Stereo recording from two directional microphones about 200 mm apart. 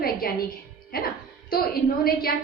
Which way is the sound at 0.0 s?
50° left (ahead or behind).